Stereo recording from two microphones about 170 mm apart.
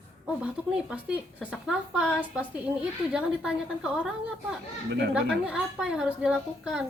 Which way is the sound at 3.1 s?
5° right (ahead or behind).